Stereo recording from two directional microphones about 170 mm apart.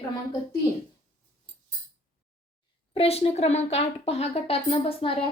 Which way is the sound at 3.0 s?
35° left (ahead or behind).